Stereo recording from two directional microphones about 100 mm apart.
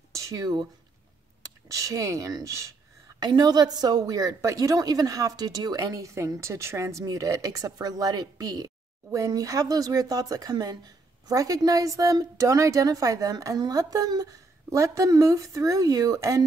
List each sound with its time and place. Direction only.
0.1 s a sound: 30° right (ahead or behind)
1.7 s a woman's voice: 30° right (ahead or behind)
3.2 s a woman's voice: 45° right (ahead or behind)